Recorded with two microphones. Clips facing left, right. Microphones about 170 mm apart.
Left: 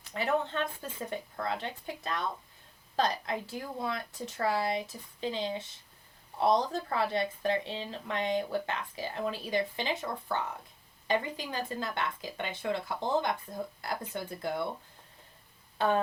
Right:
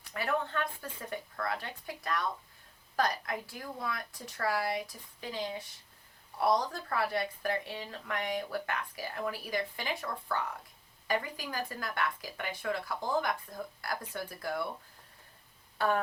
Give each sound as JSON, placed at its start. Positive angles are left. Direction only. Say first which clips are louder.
{"t": 0.1, "sound": "speech", "louder": "left 3 dB", "side_deg": 20}
{"t": 15.8, "sound": "speech", "louder": "left 2 dB", "side_deg": 20}